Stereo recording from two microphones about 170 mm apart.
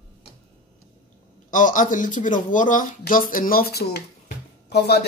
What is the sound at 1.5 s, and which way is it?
Speech, 50° left (ahead or behind).